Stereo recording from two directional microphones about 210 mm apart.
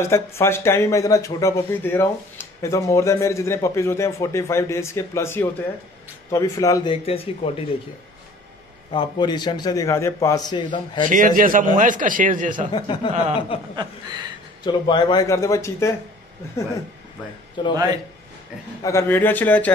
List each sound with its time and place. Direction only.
0.0 s a man's voice: 10° left (ahead or behind)
8.9 s a man's voice: 20° left (ahead or behind)
11.1 s a man's voice: 40° right (ahead or behind)
12.7 s a man's voice: 20° left (ahead or behind)
13.7 s speech: 20° right (ahead or behind)
14.6 s speech: 20° left (ahead or behind)
17.6 s a man's voice: 20° left (ahead or behind)
18.8 s speech: 15° left (ahead or behind)